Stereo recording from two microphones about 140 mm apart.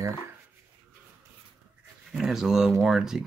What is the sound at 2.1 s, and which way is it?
Speech, 5° right (ahead or behind).